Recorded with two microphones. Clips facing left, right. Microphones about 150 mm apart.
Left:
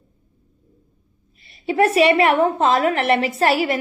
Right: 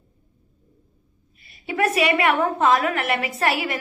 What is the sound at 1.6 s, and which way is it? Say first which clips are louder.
A woman's voice: left 6 dB; 30° left (ahead or behind).